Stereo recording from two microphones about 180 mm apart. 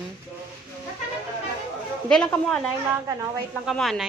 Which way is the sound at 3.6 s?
Centre (ahead or behind).